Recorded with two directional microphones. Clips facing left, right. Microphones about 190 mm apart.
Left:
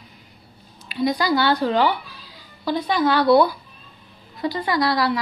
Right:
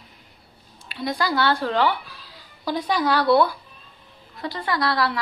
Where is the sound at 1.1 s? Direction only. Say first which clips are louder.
Right 1 dB; centre (ahead or behind).